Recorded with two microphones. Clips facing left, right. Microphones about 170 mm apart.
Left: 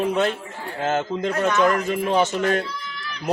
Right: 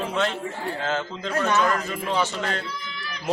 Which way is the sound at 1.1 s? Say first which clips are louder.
Left 10 dB; 20° left (ahead or behind).